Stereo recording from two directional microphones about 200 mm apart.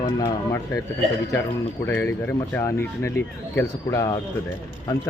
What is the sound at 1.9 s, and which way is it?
Speech, 10° left (ahead or behind).